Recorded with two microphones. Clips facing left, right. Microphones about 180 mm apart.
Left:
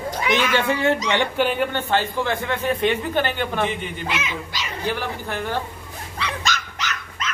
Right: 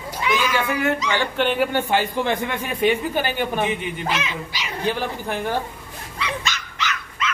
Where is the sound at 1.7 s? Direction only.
10° right (ahead or behind).